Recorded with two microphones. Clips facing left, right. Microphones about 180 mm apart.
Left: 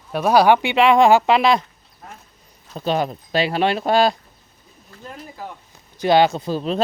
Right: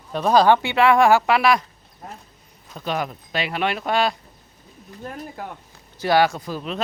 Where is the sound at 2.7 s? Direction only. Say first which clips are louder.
Left 5 dB; 30° left (ahead or behind).